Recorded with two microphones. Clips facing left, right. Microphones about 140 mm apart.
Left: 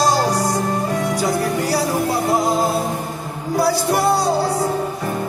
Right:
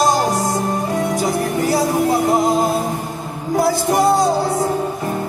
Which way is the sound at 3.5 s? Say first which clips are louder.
Right 2 dB; 20° right (ahead or behind).